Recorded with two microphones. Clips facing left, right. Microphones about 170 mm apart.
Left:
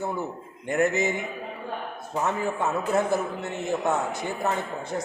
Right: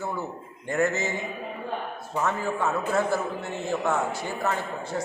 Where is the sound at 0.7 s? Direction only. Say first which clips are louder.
Left 2 dB; 15° left (ahead or behind).